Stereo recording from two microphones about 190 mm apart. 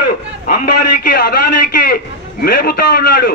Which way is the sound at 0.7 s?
50° left (ahead or behind).